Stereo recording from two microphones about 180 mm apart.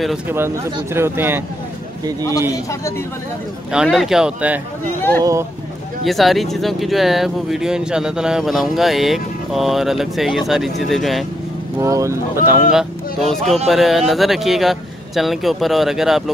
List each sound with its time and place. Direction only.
0.9 s speech: 15° right (ahead or behind)
2.5 s a man's voice: 15° left (ahead or behind)
3.7 s speech: centre (ahead or behind)
5.2 s speech: 15° right (ahead or behind)
6.0 s speech: centre (ahead or behind)
11.8 s speech: 15° right (ahead or behind)
12.7 s speech: centre (ahead or behind)